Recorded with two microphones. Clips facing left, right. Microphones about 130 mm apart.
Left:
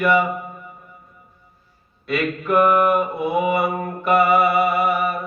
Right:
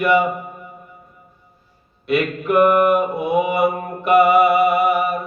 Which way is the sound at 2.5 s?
50° right (ahead or behind).